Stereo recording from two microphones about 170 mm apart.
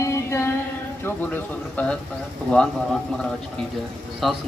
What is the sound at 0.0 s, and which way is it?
Music, 15° left (ahead or behind).